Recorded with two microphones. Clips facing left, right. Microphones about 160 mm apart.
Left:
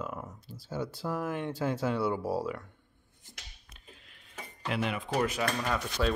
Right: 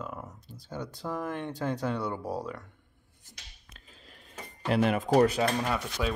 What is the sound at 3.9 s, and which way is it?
Cutlery, 40° right (ahead or behind).